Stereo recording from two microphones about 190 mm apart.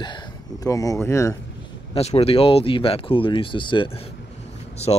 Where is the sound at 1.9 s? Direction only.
35° left (ahead or behind).